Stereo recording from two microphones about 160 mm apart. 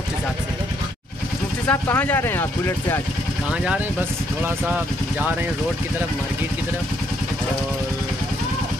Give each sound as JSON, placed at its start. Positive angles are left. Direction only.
{"t": 1.7, "sound": "speech", "side_deg": 10}